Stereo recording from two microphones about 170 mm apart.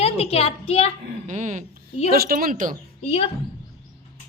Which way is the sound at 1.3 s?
45° right (ahead or behind).